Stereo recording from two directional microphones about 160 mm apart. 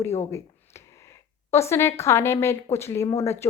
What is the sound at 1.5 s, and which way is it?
A woman's voice, 15° left (ahead or behind).